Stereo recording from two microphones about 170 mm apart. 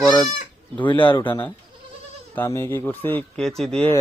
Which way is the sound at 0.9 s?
30° left (ahead or behind).